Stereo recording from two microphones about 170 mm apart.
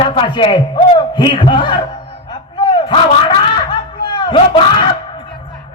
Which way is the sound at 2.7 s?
30° left (ahead or behind).